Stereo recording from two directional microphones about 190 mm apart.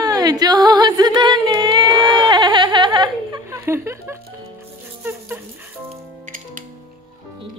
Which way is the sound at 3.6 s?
15° right (ahead or behind).